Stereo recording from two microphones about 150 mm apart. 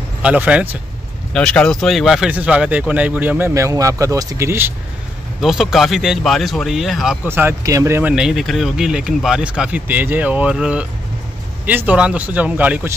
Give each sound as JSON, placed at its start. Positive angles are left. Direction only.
{"t": 0.2, "sound": "speech", "side_deg": -10}
{"t": 1.3, "sound": "speech", "side_deg": 5}
{"t": 5.4, "sound": "speech", "side_deg": 0}
{"t": 7.2, "sound": "speech", "side_deg": -15}
{"t": 8.1, "sound": "speech", "side_deg": -5}